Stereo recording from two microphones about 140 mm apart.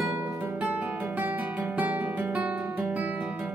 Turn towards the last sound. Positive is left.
turn(degrees=-10)  # may be behind; listen again after turning